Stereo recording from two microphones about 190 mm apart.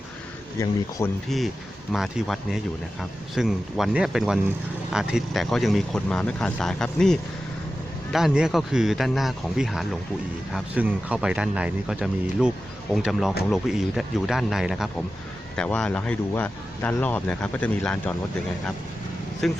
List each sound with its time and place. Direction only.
0.6 s speech: 15° left (ahead or behind)
1.9 s speech: centre (ahead or behind)
19.4 s speech: centre (ahead or behind)